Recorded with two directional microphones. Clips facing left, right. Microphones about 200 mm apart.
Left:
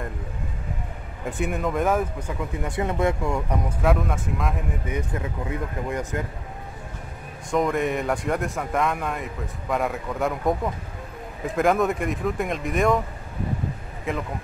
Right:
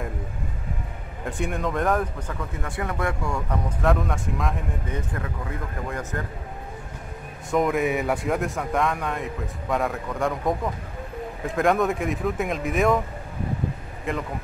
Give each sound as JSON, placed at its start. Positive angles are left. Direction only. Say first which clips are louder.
{"t": 1.2, "sound": "speech", "louder": "left 1 dB", "side_deg": 5}
{"t": 3.8, "sound": "speech", "louder": "even", "side_deg": 0}
{"t": 4.9, "sound": "speech", "louder": "left 4 dB", "side_deg": 20}
{"t": 7.5, "sound": "speech", "louder": "right 1 dB", "side_deg": 0}
{"t": 14.1, "sound": "speech", "louder": "even", "side_deg": 0}